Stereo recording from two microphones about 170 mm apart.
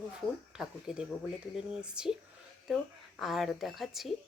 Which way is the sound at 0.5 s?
5° right (ahead or behind).